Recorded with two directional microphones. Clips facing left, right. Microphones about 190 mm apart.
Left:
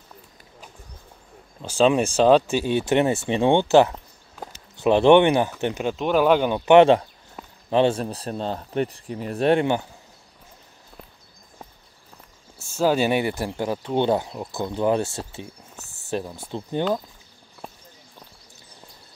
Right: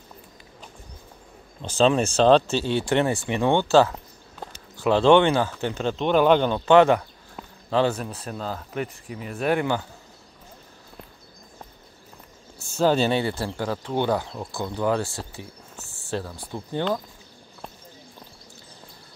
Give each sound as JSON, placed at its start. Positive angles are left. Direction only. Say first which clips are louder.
{"t": 1.6, "sound": "speech", "louder": "left 1 dB", "side_deg": 10}
{"t": 5.9, "sound": "speech", "louder": "right 1 dB", "side_deg": 5}
{"t": 12.5, "sound": "speech", "louder": "even", "side_deg": 5}